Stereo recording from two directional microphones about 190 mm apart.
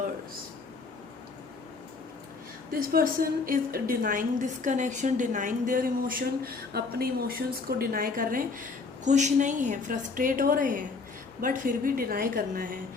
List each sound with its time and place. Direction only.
2.9 s a woman's voice: 50° right (ahead or behind)